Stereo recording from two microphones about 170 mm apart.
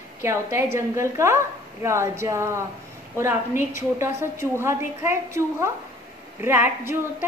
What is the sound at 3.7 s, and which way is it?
A woman's voice, 15° right (ahead or behind).